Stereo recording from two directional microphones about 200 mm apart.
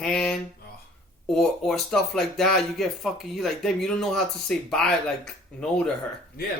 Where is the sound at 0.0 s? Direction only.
5° left (ahead or behind).